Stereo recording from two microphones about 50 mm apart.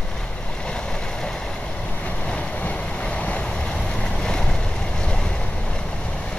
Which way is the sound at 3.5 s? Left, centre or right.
Centre.